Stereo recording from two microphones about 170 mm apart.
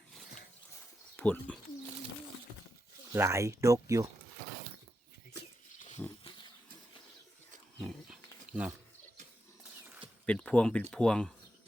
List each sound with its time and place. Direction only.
1.1 s speech: 10° left (ahead or behind)
3.1 s speech: 15° right (ahead or behind)
6.0 s wild animals: centre (ahead or behind)
8.5 s a sound: 10° right (ahead or behind)
9.8 s a sound: 10° right (ahead or behind)
10.2 s speech: 5° left (ahead or behind)